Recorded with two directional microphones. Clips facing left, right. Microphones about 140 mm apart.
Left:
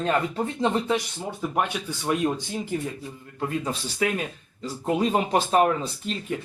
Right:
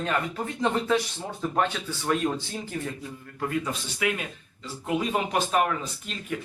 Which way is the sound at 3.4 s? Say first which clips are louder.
Left 1 dB; 30° left (ahead or behind).